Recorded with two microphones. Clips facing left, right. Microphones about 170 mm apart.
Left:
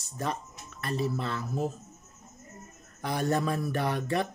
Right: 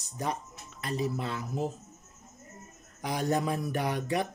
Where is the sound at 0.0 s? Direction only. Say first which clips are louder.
Even; 15° right (ahead or behind).